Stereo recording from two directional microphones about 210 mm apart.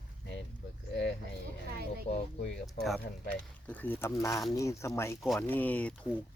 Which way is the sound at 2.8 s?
Centre (ahead or behind).